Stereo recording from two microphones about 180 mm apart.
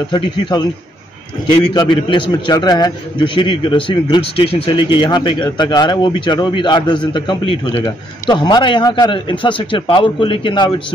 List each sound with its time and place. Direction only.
0.1 s a man's voice: 25° left (ahead or behind)
1.7 s a man's voice: 25° left (ahead or behind)